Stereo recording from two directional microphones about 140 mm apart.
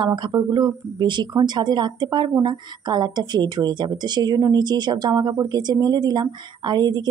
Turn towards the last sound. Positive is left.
turn(degrees=-30)  # may be behind; listen again after turning